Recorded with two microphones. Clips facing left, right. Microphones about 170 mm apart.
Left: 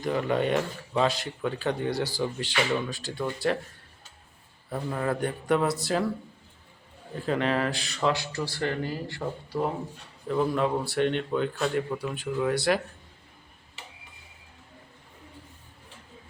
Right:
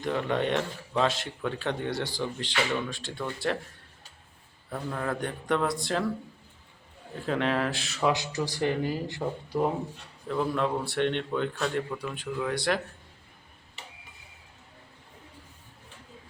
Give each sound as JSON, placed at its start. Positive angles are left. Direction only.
{"t": 0.0, "sound": "speech", "side_deg": 5}
{"t": 4.7, "sound": "speech", "side_deg": 5}
{"t": 7.2, "sound": "speech", "side_deg": 0}
{"t": 8.1, "sound": "speech", "side_deg": -15}
{"t": 10.2, "sound": "speech", "side_deg": 5}